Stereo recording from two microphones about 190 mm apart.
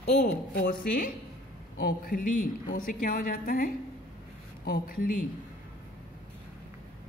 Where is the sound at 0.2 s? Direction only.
50° left (ahead or behind).